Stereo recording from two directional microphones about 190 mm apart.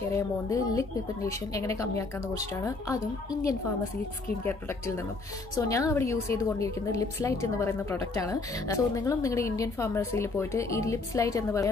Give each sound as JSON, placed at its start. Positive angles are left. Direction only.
{"t": 0.1, "sound": "a woman's voice", "side_deg": 15}